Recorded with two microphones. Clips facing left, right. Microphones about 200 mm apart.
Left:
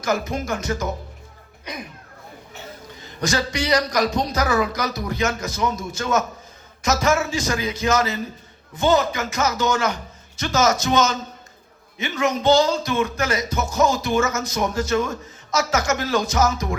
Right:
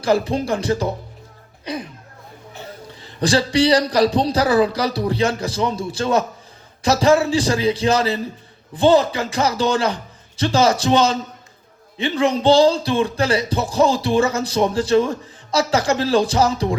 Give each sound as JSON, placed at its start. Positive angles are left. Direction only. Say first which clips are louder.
{"t": 0.0, "sound": "speech", "louder": "right 5 dB", "side_deg": -30}
{"t": 3.0, "sound": "speech", "louder": "right 5 dB", "side_deg": -30}